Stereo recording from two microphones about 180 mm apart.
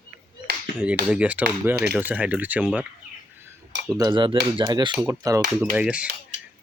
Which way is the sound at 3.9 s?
25° right (ahead or behind).